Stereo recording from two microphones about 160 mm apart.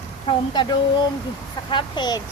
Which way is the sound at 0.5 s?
30° left (ahead or behind).